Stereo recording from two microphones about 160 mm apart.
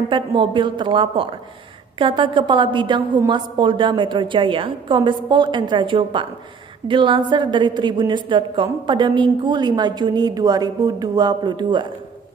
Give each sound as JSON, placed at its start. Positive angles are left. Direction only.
{"t": 0.1, "sound": "a woman's voice", "side_deg": -30}